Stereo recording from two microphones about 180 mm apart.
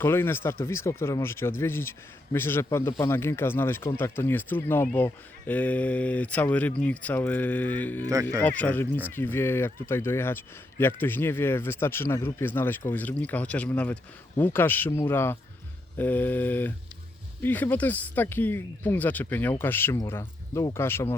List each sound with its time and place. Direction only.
0.0 s speech: 15° left (ahead or behind)
8.0 s speech: 20° right (ahead or behind)
8.4 s speech: 10° left (ahead or behind)